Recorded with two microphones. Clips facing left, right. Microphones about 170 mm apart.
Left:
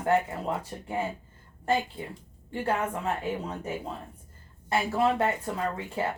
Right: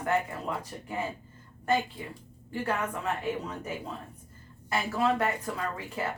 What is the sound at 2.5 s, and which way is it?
A woman's voice, 30° left (ahead or behind).